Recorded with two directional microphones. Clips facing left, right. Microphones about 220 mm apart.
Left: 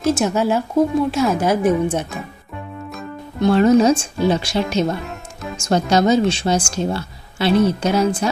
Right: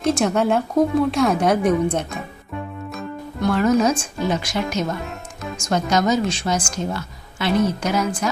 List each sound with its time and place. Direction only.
0.0 s a woman's voice: centre (ahead or behind)
3.4 s a woman's voice: 30° left (ahead or behind)